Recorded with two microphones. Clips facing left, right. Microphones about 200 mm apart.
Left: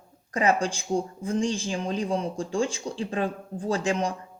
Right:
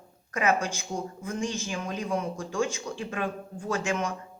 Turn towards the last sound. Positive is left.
turn(degrees=35)  # may be behind; listen again after turning